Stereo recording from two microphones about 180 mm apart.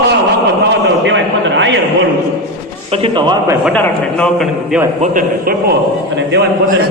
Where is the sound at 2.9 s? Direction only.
30° right (ahead or behind).